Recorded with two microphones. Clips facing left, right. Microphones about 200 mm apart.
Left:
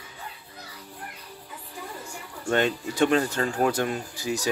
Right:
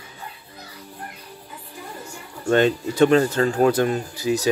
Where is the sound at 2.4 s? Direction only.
35° right (ahead or behind).